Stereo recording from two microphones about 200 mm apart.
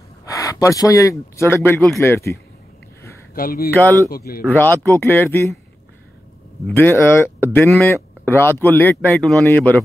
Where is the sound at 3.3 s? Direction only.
45° left (ahead or behind).